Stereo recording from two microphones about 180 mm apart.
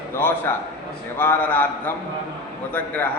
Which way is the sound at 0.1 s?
10° left (ahead or behind).